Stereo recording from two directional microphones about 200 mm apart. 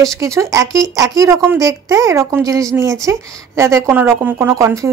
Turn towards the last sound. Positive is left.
turn(degrees=-15)  # may be behind; listen again after turning